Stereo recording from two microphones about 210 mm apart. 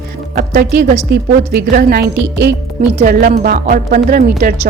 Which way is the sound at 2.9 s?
40° right (ahead or behind).